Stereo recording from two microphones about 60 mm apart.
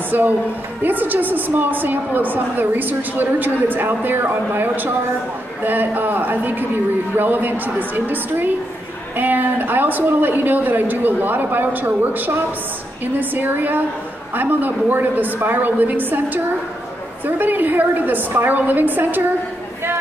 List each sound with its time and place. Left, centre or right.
0.1 s a woman's voice: right
17.4 s a woman's voice: right